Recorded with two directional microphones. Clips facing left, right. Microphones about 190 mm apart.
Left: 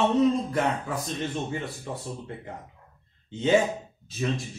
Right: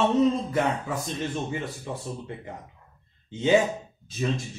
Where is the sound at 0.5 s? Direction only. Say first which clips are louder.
Right 1 dB; centre (ahead or behind).